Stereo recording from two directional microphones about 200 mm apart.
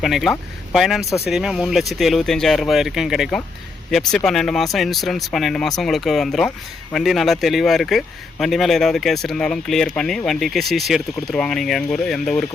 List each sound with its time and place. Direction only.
0.0 s speech: centre (ahead or behind)